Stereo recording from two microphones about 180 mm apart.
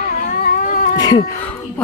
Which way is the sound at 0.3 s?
50° left (ahead or behind).